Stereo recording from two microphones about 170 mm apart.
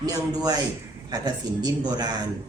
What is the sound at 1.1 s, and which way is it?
Speech, 25° right (ahead or behind).